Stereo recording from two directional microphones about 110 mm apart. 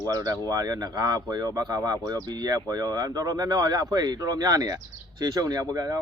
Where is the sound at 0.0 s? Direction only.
35° right (ahead or behind).